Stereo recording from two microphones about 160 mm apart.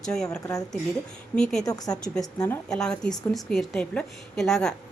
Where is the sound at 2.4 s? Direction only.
5° left (ahead or behind).